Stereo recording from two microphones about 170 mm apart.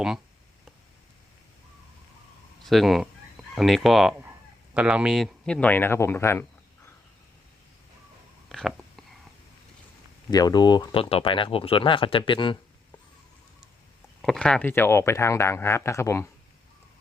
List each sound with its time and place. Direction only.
2.6 s speech: centre (ahead or behind)
8.4 s whispering: centre (ahead or behind)
10.3 s speech: 25° left (ahead or behind)
14.2 s speech: 5° left (ahead or behind)